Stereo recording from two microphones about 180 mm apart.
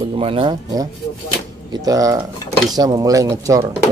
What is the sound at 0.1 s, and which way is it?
Speech, 30° right (ahead or behind).